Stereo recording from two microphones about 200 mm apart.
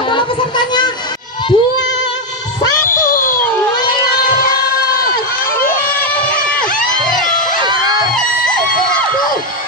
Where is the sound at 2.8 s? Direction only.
45° left (ahead or behind).